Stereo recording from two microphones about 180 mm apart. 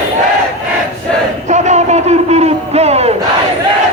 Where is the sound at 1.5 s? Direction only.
40° right (ahead or behind).